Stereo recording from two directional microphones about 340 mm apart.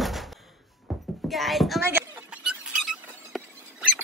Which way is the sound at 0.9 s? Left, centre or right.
Centre.